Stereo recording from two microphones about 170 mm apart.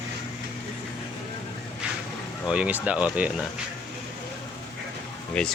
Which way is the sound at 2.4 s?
5° right (ahead or behind).